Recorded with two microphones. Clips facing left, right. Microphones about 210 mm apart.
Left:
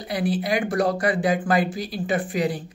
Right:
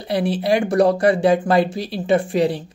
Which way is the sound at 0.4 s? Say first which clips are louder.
Right 9 dB; 30° right (ahead or behind).